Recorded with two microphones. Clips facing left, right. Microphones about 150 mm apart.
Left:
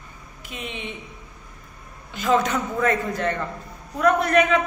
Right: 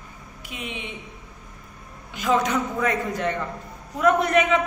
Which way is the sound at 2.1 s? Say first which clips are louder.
Left 1 dB; 10° right (ahead or behind).